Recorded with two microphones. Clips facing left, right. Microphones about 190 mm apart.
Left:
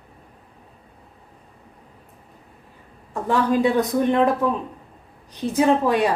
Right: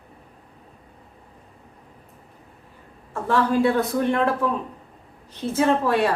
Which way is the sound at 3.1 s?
15° left (ahead or behind).